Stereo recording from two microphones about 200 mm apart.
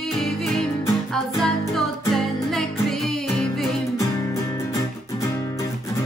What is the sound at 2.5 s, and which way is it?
Music, centre (ahead or behind).